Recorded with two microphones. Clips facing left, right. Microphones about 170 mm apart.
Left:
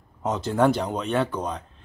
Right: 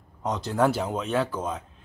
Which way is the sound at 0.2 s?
Centre (ahead or behind).